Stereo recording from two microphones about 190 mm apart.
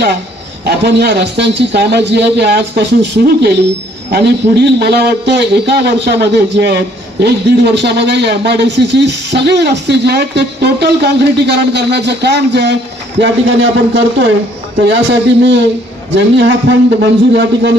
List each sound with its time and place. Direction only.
0.7 s a man's voice: 60° right (ahead or behind)
16.2 s a man's voice: 65° right (ahead or behind)